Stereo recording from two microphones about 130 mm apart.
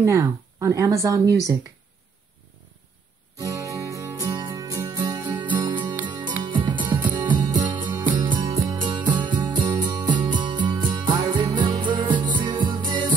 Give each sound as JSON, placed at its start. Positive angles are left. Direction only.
{"t": 0.0, "sound": "speech", "side_deg": -25}
{"t": 3.3, "sound": "music", "side_deg": -25}